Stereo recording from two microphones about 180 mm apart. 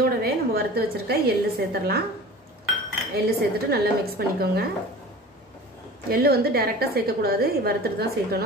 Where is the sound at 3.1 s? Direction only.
60° right (ahead or behind).